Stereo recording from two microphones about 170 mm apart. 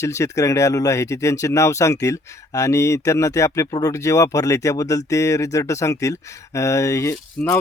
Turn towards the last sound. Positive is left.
turn(degrees=15)  # may be behind; listen again after turning